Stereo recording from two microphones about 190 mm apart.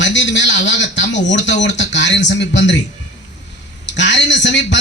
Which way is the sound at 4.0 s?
70° left (ahead or behind).